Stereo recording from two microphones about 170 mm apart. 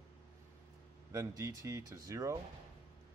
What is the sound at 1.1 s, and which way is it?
Speech, 20° right (ahead or behind).